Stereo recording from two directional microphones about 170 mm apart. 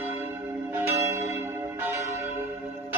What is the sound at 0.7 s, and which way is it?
Church bell, 15° right (ahead or behind).